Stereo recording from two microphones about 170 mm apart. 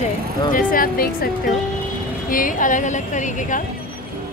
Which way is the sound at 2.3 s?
50° left (ahead or behind).